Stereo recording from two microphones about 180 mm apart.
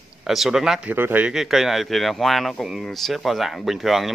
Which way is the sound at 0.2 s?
Centre (ahead or behind).